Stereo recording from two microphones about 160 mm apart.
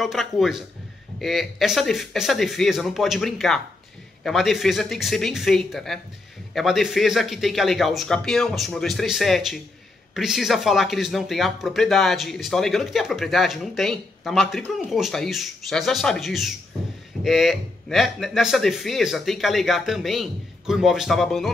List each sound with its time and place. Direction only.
0.0 s speech: centre (ahead or behind)